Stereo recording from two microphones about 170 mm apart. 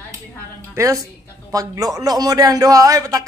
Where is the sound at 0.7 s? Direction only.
20° right (ahead or behind).